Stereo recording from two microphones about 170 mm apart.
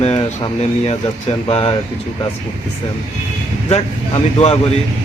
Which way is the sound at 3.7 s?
35° left (ahead or behind).